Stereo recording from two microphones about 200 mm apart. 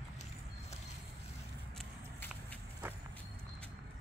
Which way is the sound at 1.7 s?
5° left (ahead or behind).